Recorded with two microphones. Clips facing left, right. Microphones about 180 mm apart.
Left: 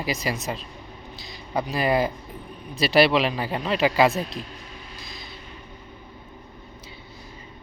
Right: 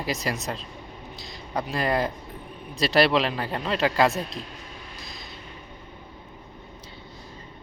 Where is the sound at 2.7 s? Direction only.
5° left (ahead or behind).